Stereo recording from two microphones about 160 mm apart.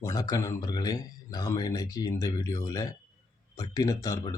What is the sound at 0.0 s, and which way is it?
Speech, 20° left (ahead or behind).